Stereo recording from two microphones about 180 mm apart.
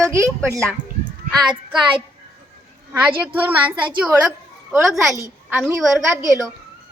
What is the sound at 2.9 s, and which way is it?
A child's voice, 10° right (ahead or behind).